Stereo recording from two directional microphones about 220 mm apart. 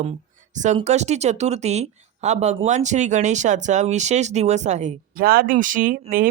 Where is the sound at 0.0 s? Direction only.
30° right (ahead or behind).